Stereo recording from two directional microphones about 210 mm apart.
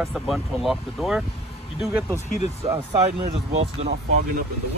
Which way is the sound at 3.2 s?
30° right (ahead or behind).